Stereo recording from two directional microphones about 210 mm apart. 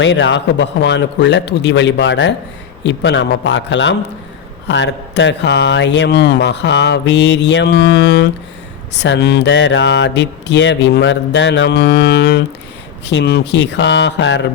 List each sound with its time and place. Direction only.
0.0 s a man's voice: 60° left (ahead or behind)